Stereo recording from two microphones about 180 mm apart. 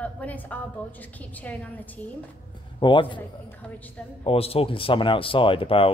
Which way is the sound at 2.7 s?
25° left (ahead or behind).